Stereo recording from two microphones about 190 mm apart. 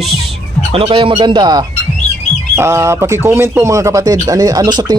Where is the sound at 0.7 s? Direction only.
30° right (ahead or behind).